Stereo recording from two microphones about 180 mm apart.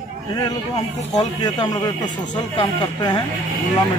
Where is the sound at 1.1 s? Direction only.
20° left (ahead or behind).